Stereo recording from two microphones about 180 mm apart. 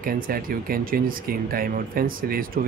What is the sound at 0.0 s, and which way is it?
Speech, 55° right (ahead or behind).